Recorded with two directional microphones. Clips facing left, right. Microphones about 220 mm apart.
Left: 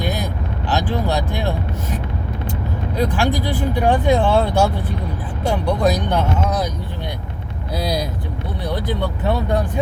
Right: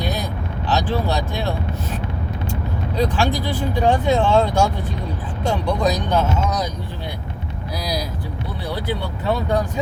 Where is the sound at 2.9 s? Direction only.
15° left (ahead or behind).